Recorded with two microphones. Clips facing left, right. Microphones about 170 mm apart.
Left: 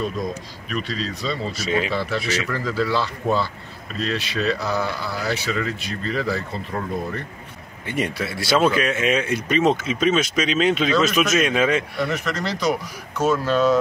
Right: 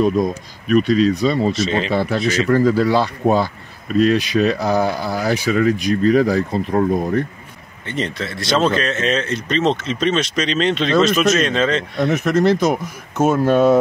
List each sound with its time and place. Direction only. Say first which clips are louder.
0.7 s speech: right 14 dB; 50° right (ahead or behind)
1.5 s speech: right 4 dB; 10° left (ahead or behind)
1.9 s speech: right 6 dB; 50° right (ahead or behind)
7.8 s speech: right 1 dB; 10° left (ahead or behind)
12.1 s speech: right 10 dB; 50° right (ahead or behind)